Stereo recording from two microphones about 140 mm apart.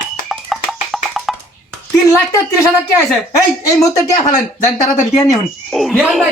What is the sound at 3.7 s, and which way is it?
Speech, 25° left (ahead or behind).